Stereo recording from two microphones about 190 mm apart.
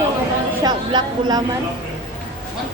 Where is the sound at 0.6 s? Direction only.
20° right (ahead or behind).